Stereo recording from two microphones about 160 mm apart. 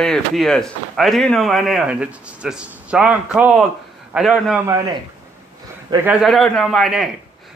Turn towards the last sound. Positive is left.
turn(degrees=0)  # may be behind; listen again after turning